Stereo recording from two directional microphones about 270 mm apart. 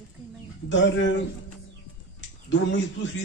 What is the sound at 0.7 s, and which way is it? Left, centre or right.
Speech, left.